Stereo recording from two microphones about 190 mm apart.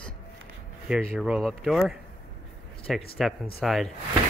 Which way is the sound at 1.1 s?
5° right (ahead or behind).